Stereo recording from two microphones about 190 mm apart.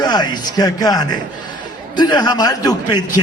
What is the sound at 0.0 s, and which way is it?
A man's voice, 20° left (ahead or behind).